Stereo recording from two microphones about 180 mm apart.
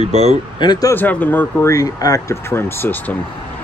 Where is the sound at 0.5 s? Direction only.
25° left (ahead or behind).